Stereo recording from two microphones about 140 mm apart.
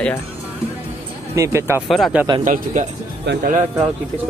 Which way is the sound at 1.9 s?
Centre (ahead or behind).